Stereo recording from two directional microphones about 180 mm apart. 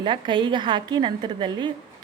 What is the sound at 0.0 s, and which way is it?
A woman's voice, 25° right (ahead or behind).